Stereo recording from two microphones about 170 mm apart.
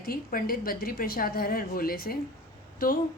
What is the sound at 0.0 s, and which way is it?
A woman's voice, 60° left (ahead or behind).